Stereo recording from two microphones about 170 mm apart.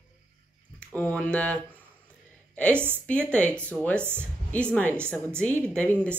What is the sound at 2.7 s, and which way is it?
Speech, 10° right (ahead or behind).